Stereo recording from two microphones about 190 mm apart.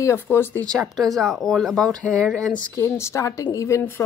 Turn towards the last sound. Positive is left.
turn(degrees=15)  # may be behind; listen again after turning